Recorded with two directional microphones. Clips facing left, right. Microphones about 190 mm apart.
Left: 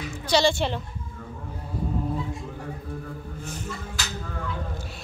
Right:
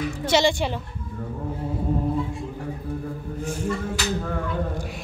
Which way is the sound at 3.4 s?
10° right (ahead or behind).